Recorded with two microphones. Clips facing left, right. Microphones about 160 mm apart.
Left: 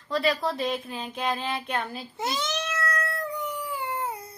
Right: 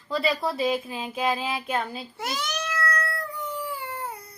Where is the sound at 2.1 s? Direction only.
25° left (ahead or behind).